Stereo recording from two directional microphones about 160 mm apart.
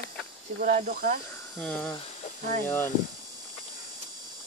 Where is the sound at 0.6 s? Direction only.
60° right (ahead or behind).